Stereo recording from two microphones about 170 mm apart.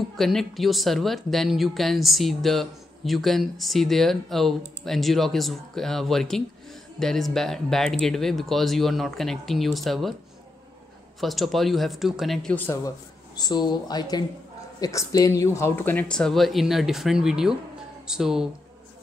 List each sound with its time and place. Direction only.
0.1 s speech: centre (ahead or behind)
11.1 s speech: centre (ahead or behind)